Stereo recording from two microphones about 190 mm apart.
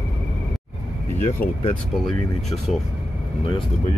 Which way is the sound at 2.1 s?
Centre (ahead or behind).